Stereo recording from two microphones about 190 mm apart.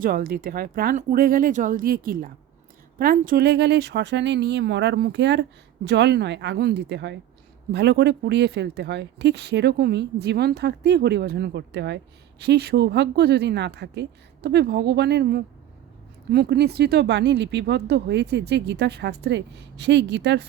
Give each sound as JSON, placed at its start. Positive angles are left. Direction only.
{"t": 0.0, "sound": "speech", "side_deg": -50}